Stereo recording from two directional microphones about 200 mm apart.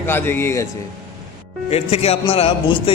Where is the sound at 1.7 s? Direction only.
30° left (ahead or behind).